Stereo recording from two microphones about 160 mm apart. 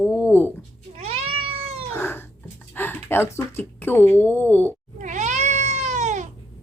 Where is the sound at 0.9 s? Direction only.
40° right (ahead or behind).